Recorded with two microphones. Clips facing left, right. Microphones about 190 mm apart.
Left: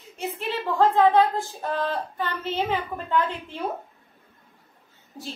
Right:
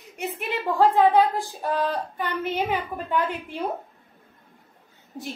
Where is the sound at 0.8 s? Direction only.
15° right (ahead or behind).